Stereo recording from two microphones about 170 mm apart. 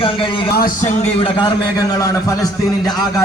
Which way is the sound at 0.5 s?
55° left (ahead or behind).